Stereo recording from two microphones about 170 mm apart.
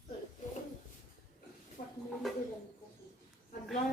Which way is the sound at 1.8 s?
35° left (ahead or behind).